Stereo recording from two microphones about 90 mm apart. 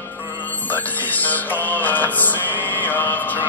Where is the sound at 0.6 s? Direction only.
20° left (ahead or behind).